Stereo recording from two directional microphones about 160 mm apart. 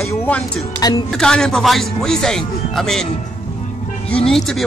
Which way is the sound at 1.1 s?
5° left (ahead or behind).